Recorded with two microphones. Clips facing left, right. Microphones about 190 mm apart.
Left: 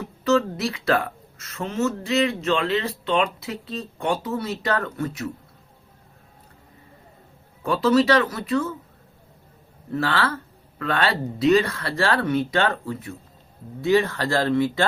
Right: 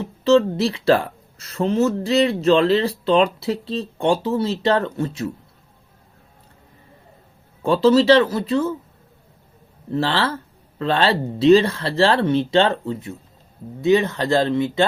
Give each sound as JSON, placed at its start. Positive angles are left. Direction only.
{"t": 0.0, "sound": "speech", "side_deg": -25}
{"t": 7.6, "sound": "speech", "side_deg": -30}
{"t": 9.9, "sound": "speech", "side_deg": -25}